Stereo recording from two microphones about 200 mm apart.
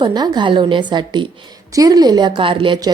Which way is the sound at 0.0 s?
20° right (ahead or behind).